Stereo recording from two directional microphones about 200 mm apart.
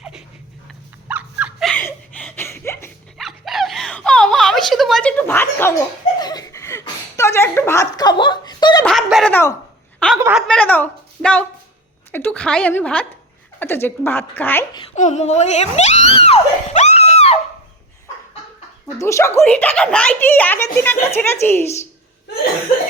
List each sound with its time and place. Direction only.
0.0 s a sound: 5° right (ahead or behind)
1.0 s dog: 5° right (ahead or behind)
1.7 s chuckle: 10° left (ahead or behind)
3.2 s a sound: centre (ahead or behind)
6.8 s speech: 15° left (ahead or behind)
8.8 s a woman's voice: centre (ahead or behind)
10.2 s a woman's voice: 10° right (ahead or behind)
10.4 s a woman's voice: 5° left (ahead or behind)
14.9 s a sound: 35° left (ahead or behind)
18.9 s speech: 15° left (ahead or behind)